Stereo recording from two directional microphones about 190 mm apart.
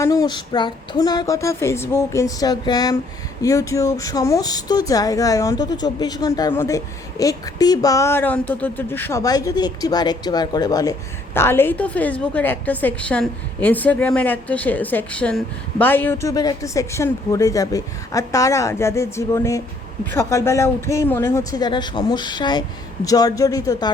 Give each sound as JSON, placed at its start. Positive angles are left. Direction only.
{"t": 0.0, "sound": "a woman's voice", "side_deg": 20}